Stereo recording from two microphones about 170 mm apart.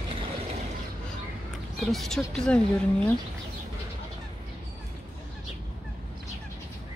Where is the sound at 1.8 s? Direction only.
Centre (ahead or behind).